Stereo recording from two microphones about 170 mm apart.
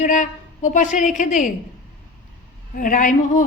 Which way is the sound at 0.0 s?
45° left (ahead or behind).